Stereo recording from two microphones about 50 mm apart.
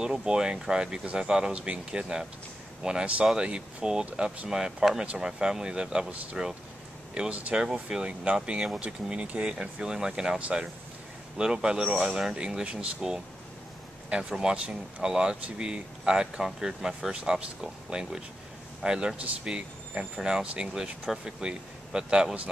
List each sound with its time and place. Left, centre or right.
0.0 s speech: centre
7.2 s speech: right
8.8 s speech: right
9.6 s speech: centre
14.5 s speech: right